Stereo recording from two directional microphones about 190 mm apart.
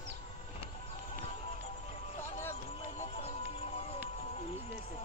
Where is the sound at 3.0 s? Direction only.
30° left (ahead or behind).